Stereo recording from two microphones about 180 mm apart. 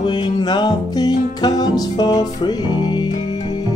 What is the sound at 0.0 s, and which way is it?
Music, 25° left (ahead or behind).